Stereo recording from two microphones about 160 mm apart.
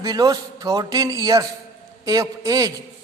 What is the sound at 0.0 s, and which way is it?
A man's voice, 25° right (ahead or behind).